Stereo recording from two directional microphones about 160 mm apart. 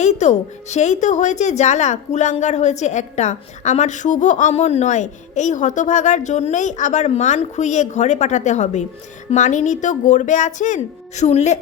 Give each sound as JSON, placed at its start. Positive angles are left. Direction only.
{"t": 0.0, "sound": "a woman's voice", "side_deg": 45}